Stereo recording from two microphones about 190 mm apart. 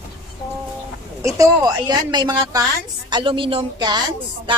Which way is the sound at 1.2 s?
15° right (ahead or behind).